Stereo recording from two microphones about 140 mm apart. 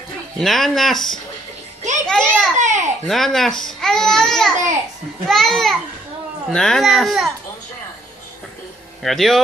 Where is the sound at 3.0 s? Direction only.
Centre (ahead or behind).